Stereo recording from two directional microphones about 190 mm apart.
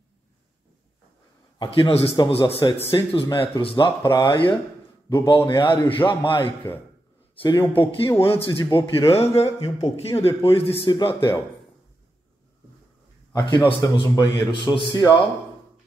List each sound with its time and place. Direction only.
1.6 s a man's voice: 30° left (ahead or behind)
13.3 s a man's voice: 20° left (ahead or behind)